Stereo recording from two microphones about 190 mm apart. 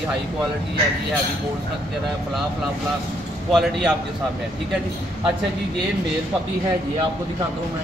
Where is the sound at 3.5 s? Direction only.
Centre (ahead or behind).